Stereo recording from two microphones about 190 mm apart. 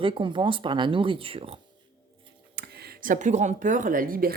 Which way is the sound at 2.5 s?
60° right (ahead or behind).